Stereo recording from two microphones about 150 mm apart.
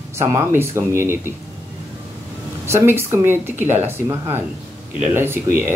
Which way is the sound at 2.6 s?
15° right (ahead or behind).